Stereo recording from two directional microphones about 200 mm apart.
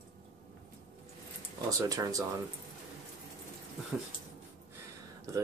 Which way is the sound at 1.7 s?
15° right (ahead or behind).